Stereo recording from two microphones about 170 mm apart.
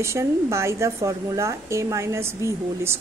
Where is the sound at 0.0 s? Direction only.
15° right (ahead or behind).